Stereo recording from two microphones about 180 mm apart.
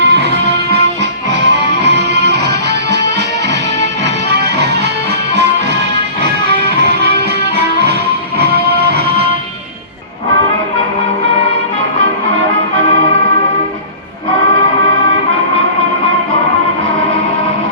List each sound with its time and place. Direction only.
0.0 s music: 70° right (ahead or behind)
4.3 s music: 65° right (ahead or behind)
6.2 s music: 65° right (ahead or behind)